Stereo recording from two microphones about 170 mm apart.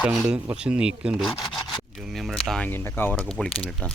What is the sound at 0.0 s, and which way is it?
Speech, 5° right (ahead or behind).